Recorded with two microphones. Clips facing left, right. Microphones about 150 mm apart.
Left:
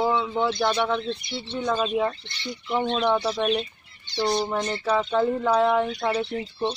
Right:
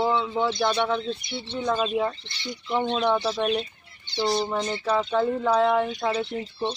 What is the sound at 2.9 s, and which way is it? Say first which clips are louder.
Speech: left 1 dB; 10° left (ahead or behind).